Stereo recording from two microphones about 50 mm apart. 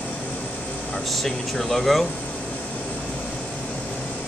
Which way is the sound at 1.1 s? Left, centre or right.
Centre.